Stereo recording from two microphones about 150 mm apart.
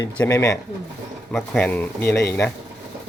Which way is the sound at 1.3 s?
10° left (ahead or behind).